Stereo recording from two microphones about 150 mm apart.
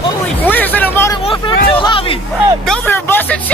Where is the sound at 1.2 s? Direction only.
35° left (ahead or behind).